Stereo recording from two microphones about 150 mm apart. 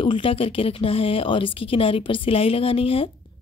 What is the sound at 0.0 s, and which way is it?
Speech, 35° left (ahead or behind).